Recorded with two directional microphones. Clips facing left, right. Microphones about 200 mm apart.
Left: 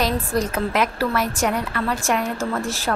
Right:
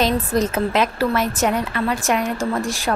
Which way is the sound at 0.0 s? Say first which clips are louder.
Right 3 dB; 20° right (ahead or behind).